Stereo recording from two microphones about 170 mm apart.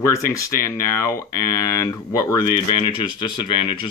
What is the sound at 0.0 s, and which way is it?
Speech, 15° left (ahead or behind).